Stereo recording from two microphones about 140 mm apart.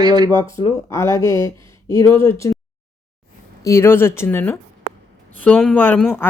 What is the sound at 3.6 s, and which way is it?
Speech, 20° left (ahead or behind).